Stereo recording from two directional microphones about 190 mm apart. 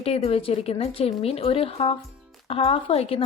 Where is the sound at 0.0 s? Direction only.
30° left (ahead or behind).